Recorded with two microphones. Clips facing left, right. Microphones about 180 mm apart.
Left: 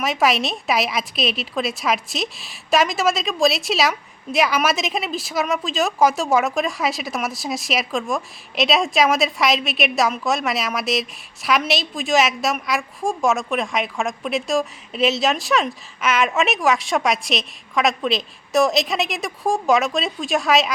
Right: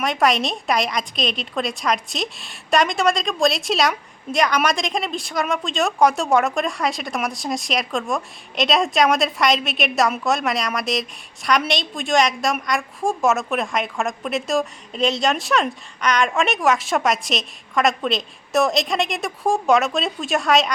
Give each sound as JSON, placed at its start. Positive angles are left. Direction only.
{"t": 0.0, "sound": "a woman's voice", "side_deg": 0}